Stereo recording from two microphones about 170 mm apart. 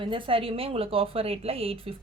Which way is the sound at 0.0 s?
30° right (ahead or behind).